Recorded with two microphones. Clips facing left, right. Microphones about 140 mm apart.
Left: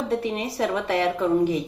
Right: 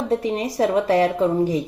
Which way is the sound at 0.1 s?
35° right (ahead or behind).